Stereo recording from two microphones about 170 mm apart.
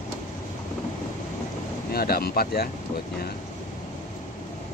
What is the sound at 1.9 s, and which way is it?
Speech, 65° left (ahead or behind).